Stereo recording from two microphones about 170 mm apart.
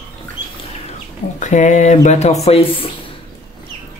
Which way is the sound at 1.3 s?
45° left (ahead or behind).